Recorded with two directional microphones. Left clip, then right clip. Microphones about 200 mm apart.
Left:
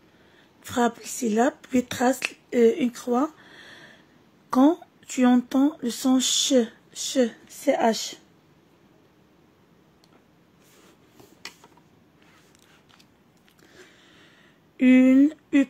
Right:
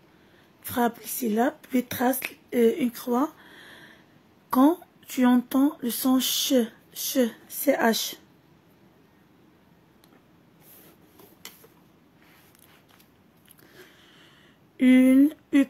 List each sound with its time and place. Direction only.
0.7 s speech: 10° left (ahead or behind); by 8.2 s 5° right (ahead or behind)
13.7 s a sound: centre (ahead or behind)
14.8 s speech: centre (ahead or behind)